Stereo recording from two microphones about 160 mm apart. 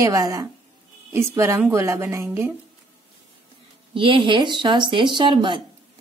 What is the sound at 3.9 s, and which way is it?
A woman's voice, 35° right (ahead or behind).